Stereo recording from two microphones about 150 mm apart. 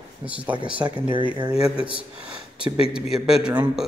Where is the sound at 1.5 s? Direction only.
5° right (ahead or behind).